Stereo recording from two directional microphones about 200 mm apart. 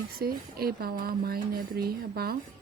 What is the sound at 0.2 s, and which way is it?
Speech, 50° right (ahead or behind).